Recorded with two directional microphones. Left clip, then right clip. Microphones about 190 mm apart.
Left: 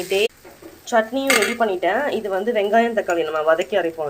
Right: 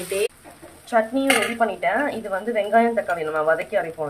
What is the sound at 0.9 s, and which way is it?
Speech, 25° left (ahead or behind).